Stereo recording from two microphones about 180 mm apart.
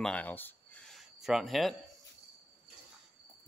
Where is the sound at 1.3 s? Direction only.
Centre (ahead or behind).